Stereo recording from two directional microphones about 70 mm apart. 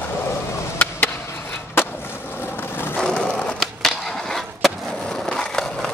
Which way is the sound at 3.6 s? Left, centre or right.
Centre.